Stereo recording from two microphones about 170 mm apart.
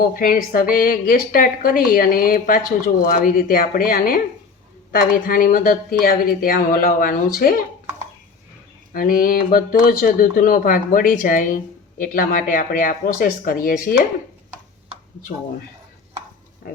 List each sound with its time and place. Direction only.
0.0 s a woman's voice: 55° left (ahead or behind)
8.9 s speech: 55° left (ahead or behind)